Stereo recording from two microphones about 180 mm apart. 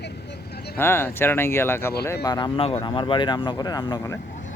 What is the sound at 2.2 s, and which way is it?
Speech, 25° left (ahead or behind).